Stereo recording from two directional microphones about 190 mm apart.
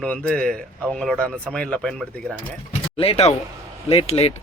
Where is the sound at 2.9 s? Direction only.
30° left (ahead or behind).